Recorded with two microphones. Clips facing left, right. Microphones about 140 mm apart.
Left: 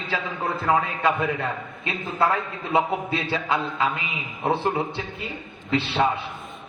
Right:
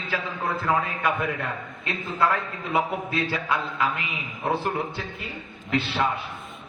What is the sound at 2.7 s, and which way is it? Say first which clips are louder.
A man's voice: left 3 dB; 25° left (ahead or behind).